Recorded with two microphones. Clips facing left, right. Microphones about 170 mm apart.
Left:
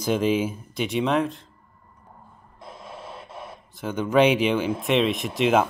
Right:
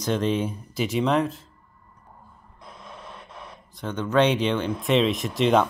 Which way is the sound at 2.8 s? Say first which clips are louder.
Left 3 dB; 5° left (ahead or behind).